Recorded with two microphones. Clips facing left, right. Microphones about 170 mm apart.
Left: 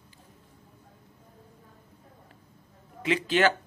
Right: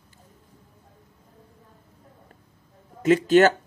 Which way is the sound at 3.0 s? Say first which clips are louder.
Right 8 dB; 45° right (ahead or behind).